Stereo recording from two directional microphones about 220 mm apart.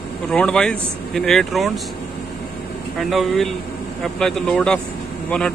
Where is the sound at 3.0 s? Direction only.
Centre (ahead or behind).